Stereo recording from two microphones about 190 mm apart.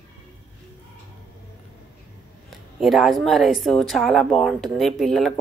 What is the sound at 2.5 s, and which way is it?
Speech, centre (ahead or behind).